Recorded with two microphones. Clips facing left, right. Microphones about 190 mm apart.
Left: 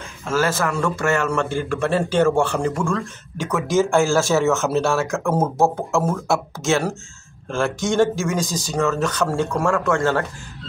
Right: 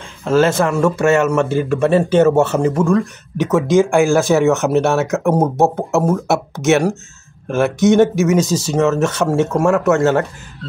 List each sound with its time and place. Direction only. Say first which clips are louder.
0.2 s a man's voice: right 7 dB; 25° right (ahead or behind)